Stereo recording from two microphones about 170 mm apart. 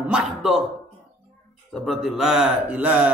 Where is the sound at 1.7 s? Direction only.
Centre (ahead or behind).